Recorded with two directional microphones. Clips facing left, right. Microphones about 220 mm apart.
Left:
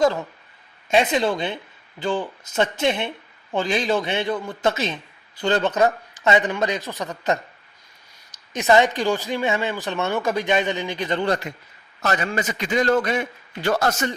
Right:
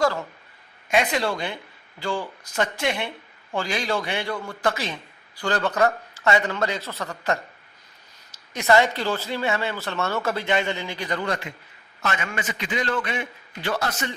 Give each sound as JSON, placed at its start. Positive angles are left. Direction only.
{"t": 0.9, "sound": "a man's voice", "side_deg": 25}